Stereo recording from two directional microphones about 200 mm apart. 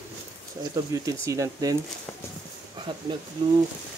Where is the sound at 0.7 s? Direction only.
15° right (ahead or behind).